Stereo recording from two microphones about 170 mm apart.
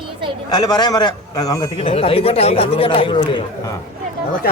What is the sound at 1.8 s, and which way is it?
Speech, 35° left (ahead or behind).